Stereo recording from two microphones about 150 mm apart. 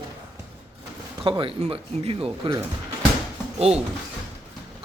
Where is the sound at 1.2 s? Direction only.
35° right (ahead or behind).